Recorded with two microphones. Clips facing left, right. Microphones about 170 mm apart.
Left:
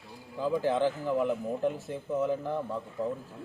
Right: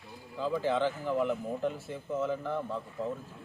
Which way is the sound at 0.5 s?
15° left (ahead or behind).